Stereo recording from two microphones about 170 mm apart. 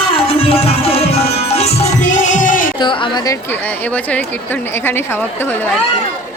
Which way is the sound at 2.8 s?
30° left (ahead or behind).